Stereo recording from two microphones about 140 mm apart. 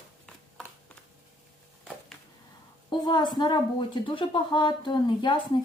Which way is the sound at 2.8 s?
30° left (ahead or behind).